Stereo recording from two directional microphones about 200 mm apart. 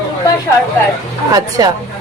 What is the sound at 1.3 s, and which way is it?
Speech, 20° right (ahead or behind).